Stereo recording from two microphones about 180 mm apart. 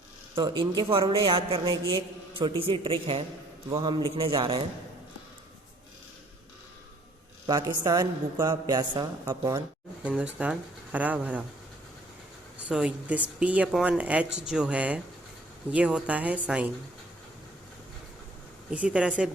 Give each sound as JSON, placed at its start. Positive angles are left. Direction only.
{"t": 0.3, "sound": "a man's voice", "side_deg": -25}
{"t": 7.4, "sound": "a man's voice", "side_deg": -20}
{"t": 10.0, "sound": "speech", "side_deg": -5}
{"t": 12.5, "sound": "speech", "side_deg": -5}
{"t": 18.7, "sound": "speech", "side_deg": -5}